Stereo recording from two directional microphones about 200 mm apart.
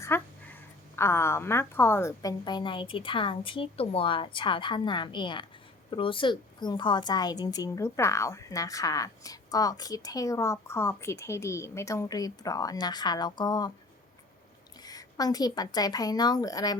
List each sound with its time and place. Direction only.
0.0 s a sound: 10° left (ahead or behind)
0.9 s a woman's voice: 10° left (ahead or behind)
14.8 s a woman's voice: 20° left (ahead or behind)